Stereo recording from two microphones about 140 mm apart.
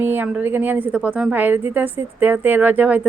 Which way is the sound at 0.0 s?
15° right (ahead or behind).